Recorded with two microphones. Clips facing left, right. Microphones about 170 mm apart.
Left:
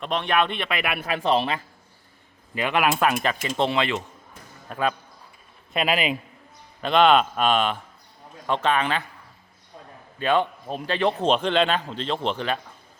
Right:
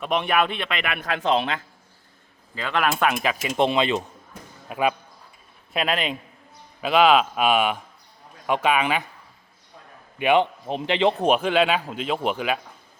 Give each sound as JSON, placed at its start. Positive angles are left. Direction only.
{"t": 0.0, "sound": "a man's voice", "side_deg": -10}
{"t": 2.9, "sound": "a man's voice", "side_deg": 0}
{"t": 3.4, "sound": "a man's voice", "side_deg": -15}
{"t": 5.7, "sound": "a man's voice", "side_deg": 5}
{"t": 10.2, "sound": "a man's voice", "side_deg": -15}